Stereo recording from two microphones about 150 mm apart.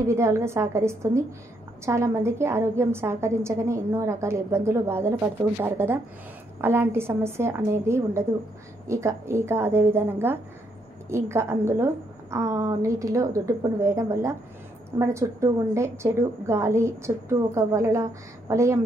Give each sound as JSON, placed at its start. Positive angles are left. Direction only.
{"t": 0.0, "sound": "a woman's voice", "side_deg": -20}